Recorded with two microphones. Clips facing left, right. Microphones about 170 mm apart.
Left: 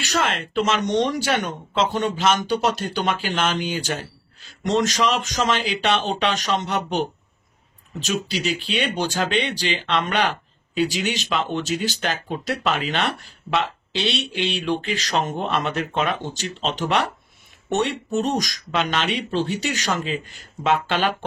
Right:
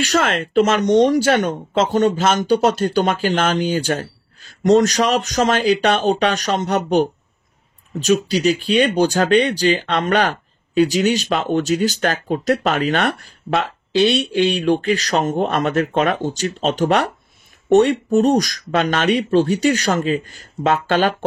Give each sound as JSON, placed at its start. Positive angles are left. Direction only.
{"t": 0.0, "sound": "speech", "side_deg": -45}